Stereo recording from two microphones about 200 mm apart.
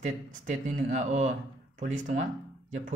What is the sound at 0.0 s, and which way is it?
Speech, 35° right (ahead or behind).